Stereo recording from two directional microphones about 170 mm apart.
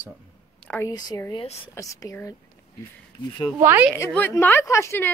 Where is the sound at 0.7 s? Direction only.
20° left (ahead or behind).